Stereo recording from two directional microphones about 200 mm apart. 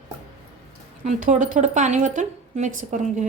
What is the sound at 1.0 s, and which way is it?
Speech, 40° right (ahead or behind).